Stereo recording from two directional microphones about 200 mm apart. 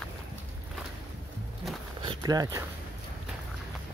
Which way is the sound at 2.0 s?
20° right (ahead or behind).